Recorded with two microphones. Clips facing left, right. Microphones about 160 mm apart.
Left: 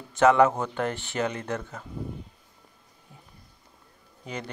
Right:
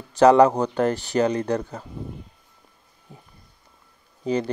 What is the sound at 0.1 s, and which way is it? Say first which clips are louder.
Speech: right 5 dB; 35° right (ahead or behind).